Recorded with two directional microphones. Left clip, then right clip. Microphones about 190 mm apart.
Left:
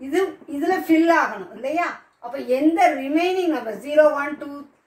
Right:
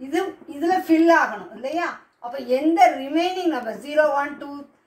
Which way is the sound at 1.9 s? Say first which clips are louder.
Even; 15° left (ahead or behind).